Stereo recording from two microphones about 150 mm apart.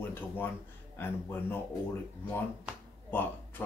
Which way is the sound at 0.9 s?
15° left (ahead or behind).